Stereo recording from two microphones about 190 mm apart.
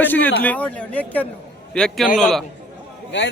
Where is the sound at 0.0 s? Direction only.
10° left (ahead or behind).